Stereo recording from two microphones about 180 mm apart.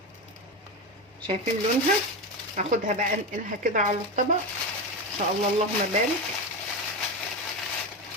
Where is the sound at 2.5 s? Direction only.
45° right (ahead or behind).